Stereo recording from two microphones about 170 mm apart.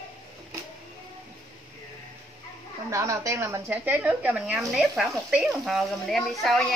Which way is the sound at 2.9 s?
20° right (ahead or behind).